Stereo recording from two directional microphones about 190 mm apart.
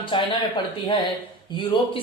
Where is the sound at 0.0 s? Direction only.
25° left (ahead or behind).